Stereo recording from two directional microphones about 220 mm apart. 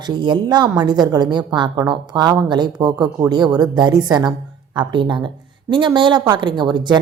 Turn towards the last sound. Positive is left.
turn(degrees=-20)  # may be behind; listen again after turning